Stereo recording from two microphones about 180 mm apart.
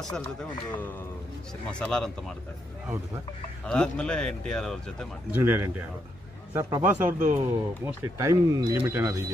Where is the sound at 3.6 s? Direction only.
5° left (ahead or behind).